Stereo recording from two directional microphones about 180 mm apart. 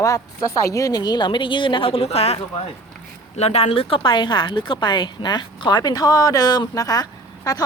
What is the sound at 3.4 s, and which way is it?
Speech, 35° left (ahead or behind).